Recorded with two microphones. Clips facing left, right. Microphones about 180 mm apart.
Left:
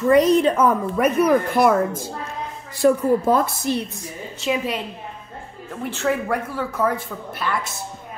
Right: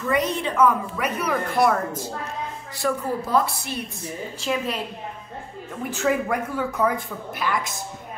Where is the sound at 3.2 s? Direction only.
45° left (ahead or behind).